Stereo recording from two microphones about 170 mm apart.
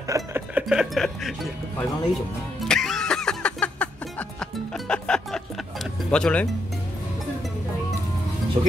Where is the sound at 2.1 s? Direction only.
Centre (ahead or behind).